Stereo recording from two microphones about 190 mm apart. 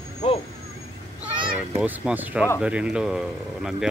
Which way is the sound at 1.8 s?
10° right (ahead or behind).